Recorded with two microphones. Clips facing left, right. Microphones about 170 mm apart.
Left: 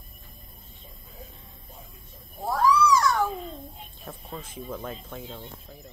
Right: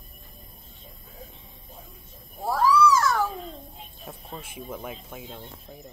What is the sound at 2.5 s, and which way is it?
Cat, 10° right (ahead or behind).